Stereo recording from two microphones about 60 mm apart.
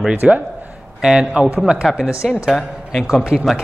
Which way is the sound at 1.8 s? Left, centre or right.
Centre.